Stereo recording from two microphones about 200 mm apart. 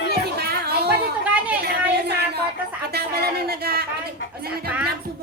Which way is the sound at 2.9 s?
50° right (ahead or behind).